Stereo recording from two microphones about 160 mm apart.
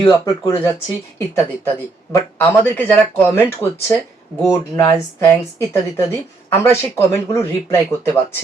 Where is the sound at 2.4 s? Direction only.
10° left (ahead or behind).